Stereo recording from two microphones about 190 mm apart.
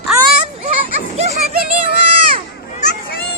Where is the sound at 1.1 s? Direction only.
35° right (ahead or behind).